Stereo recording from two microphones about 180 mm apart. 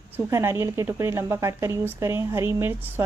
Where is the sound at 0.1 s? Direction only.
15° right (ahead or behind).